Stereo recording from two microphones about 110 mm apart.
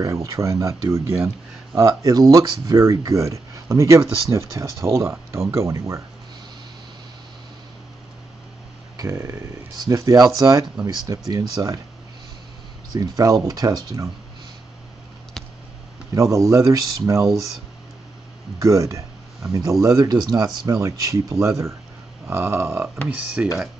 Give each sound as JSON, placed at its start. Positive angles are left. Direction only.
{"t": 0.0, "sound": "speech", "side_deg": -30}
{"t": 8.9, "sound": "speech", "side_deg": -30}
{"t": 12.9, "sound": "speech", "side_deg": -35}
{"t": 16.2, "sound": "speech", "side_deg": -30}
{"t": 17.2, "sound": "speech", "side_deg": 0}
{"t": 18.6, "sound": "speech", "side_deg": -30}
{"t": 23.0, "sound": "speech", "side_deg": -10}